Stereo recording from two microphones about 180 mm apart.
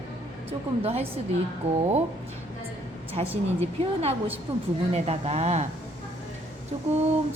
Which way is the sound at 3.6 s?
35° right (ahead or behind).